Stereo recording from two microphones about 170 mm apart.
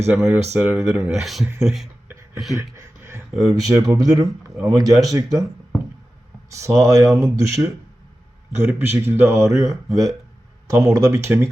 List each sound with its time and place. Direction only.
0.1 s speech: centre (ahead or behind)
3.0 s a sound: 15° right (ahead or behind)
3.5 s speech: 20° right (ahead or behind)
6.5 s speech: 20° right (ahead or behind)
9.9 s speech: centre (ahead or behind)
10.7 s speech: 20° right (ahead or behind)